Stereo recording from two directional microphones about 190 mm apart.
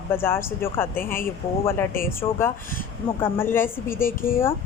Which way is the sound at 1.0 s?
50° left (ahead or behind).